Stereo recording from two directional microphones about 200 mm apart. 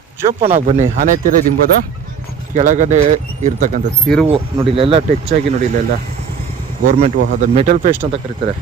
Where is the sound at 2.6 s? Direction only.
35° right (ahead or behind).